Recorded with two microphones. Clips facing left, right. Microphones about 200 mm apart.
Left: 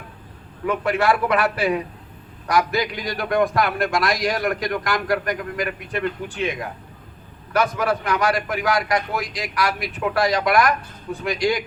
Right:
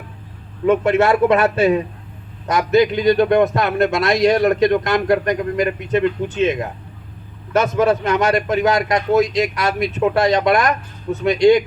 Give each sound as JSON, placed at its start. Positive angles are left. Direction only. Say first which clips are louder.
{"t": 0.6, "sound": "a man's voice", "louder": "right 6 dB", "side_deg": -25}